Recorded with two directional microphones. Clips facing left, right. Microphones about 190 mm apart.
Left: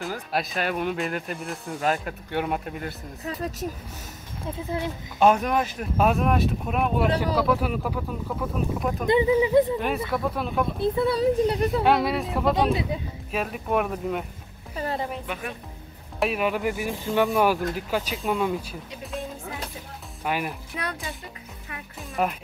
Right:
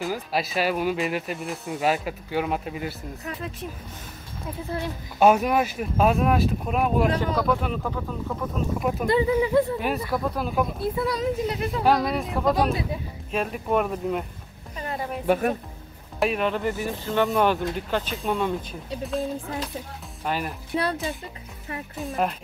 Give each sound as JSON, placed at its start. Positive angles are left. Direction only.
{"t": 0.0, "sound": "speech", "side_deg": 0}
{"t": 3.3, "sound": "a child's voice", "side_deg": 40}
{"t": 4.6, "sound": "speech", "side_deg": 15}
{"t": 5.2, "sound": "speech", "side_deg": -5}
{"t": 9.0, "sound": "speech", "side_deg": 20}
{"t": 9.8, "sound": "speech", "side_deg": -5}
{"t": 10.8, "sound": "a child's voice", "side_deg": 30}
{"t": 11.8, "sound": "speech", "side_deg": 0}
{"t": 14.8, "sound": "a child's voice", "side_deg": 30}
{"t": 15.2, "sound": "a woman's voice", "side_deg": -45}
{"t": 16.2, "sound": "speech", "side_deg": 5}
{"t": 20.2, "sound": "speech", "side_deg": 10}
{"t": 20.7, "sound": "speech", "side_deg": -30}
{"t": 21.9, "sound": "speech", "side_deg": 0}